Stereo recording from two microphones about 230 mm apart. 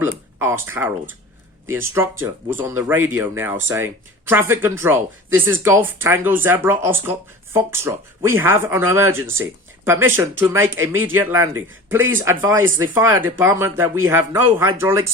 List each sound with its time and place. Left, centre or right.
0.0 s speech: centre
11.9 s speech: right
12.2 s speech: centre